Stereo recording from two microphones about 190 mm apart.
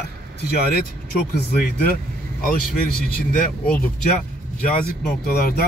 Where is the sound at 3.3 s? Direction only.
50° left (ahead or behind).